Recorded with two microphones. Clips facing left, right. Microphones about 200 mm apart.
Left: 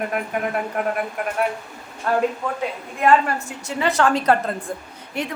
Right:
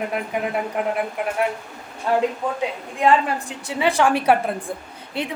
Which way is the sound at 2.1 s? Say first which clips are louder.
Even; 15° right (ahead or behind).